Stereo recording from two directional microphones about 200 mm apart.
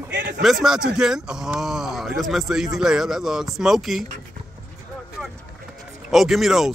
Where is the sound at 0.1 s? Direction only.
60° right (ahead or behind).